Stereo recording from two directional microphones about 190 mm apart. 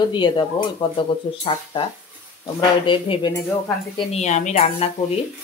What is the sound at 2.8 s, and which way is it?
A woman's voice, 25° left (ahead or behind).